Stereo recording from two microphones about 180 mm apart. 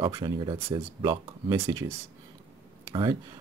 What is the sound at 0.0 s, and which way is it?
Speech, 25° right (ahead or behind).